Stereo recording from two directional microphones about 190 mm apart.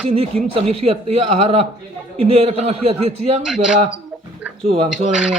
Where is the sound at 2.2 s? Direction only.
30° right (ahead or behind).